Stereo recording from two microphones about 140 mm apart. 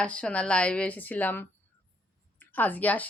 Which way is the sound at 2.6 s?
10° left (ahead or behind).